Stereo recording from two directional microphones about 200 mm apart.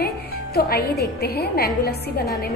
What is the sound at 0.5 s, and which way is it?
A woman's voice, 50° left (ahead or behind).